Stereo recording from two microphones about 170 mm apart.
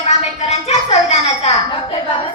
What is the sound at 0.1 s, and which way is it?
Music, 40° left (ahead or behind).